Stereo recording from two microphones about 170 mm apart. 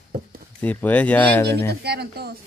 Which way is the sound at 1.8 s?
70° right (ahead or behind).